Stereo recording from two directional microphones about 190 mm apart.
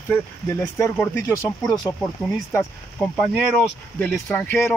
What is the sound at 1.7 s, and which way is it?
Speech, 20° left (ahead or behind).